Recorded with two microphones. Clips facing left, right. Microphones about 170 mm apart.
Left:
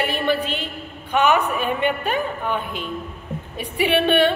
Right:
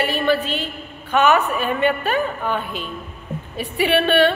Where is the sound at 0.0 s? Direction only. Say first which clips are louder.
Right 2 dB; 15° left (ahead or behind).